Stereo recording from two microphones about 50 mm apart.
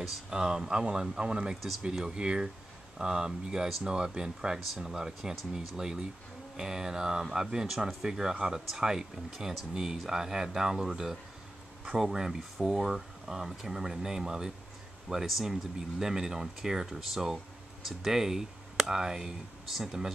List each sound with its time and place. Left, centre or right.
0.0 s speech: centre